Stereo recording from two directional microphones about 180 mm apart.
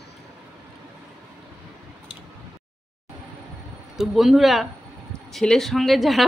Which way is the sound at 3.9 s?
Centre (ahead or behind).